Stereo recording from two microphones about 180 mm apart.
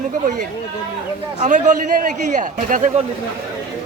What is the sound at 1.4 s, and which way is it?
A man's voice, 45° right (ahead or behind).